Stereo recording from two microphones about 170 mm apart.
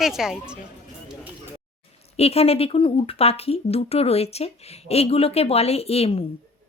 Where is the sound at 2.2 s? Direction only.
35° left (ahead or behind).